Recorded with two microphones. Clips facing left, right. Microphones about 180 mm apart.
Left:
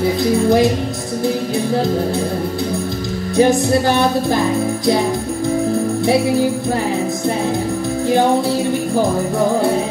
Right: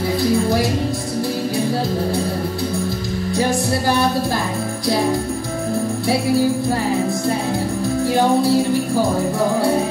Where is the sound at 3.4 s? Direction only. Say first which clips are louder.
Left 7 dB; 20° left (ahead or behind).